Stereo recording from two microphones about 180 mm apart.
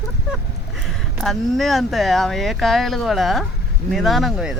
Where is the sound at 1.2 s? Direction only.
Centre (ahead or behind).